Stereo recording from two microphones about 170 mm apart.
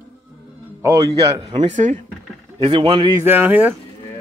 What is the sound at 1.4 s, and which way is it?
Speech, 35° right (ahead or behind).